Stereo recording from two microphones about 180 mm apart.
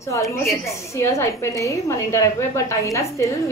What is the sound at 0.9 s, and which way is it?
A woman's voice, 15° left (ahead or behind).